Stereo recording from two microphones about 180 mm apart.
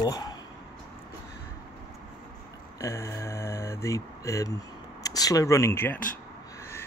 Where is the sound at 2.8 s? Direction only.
15° left (ahead or behind).